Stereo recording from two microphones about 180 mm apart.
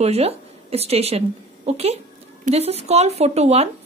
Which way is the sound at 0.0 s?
35° right (ahead or behind).